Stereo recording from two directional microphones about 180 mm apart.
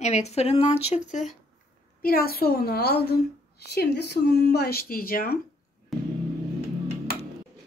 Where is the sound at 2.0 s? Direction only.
55° left (ahead or behind).